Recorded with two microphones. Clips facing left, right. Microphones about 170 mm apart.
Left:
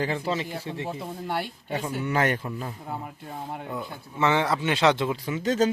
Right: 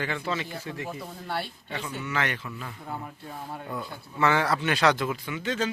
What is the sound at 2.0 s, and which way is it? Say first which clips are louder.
Speech: left 6 dB; 45° left (ahead or behind).